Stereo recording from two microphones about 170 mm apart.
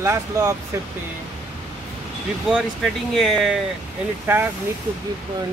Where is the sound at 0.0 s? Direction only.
15° right (ahead or behind).